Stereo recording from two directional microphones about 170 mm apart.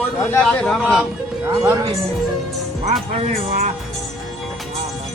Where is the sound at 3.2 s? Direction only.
40° right (ahead or behind).